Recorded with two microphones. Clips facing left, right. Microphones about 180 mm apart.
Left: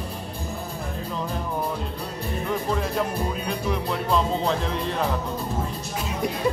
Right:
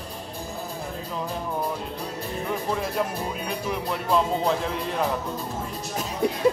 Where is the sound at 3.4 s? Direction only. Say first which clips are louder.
Left 2 dB; 5° right (ahead or behind).